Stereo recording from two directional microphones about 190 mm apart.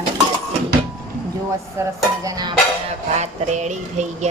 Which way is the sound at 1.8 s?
15° right (ahead or behind).